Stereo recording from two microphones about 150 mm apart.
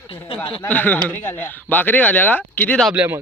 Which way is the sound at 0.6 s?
10° left (ahead or behind).